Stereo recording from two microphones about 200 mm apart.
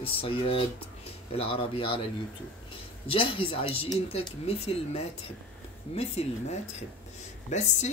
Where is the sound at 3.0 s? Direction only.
25° left (ahead or behind).